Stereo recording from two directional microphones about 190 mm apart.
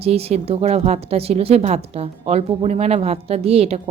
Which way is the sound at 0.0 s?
30° right (ahead or behind).